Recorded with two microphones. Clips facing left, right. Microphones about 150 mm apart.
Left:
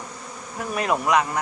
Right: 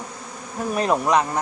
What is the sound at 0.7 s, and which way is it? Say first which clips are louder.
Insect: right 2 dB; 30° right (ahead or behind).